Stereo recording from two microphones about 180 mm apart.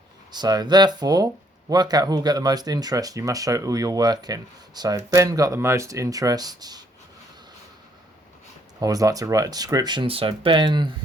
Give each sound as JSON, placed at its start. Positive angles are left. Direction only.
{"t": 0.3, "sound": "speech", "side_deg": -20}
{"t": 8.8, "sound": "speech", "side_deg": -20}